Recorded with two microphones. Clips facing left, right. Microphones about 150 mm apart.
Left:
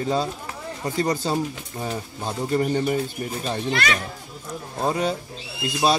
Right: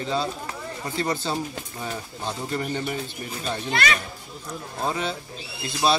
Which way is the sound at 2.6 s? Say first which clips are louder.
Left 9 dB; 35° left (ahead or behind).